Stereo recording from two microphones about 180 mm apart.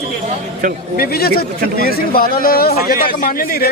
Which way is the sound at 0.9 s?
60° left (ahead or behind).